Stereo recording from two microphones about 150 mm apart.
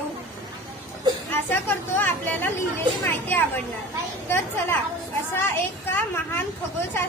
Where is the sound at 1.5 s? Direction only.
15° left (ahead or behind).